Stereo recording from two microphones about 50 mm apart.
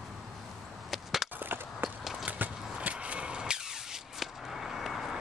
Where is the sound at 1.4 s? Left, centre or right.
Right; by 5.2 s centre.